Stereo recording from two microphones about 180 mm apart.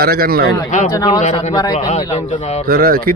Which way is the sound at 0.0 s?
55° right (ahead or behind).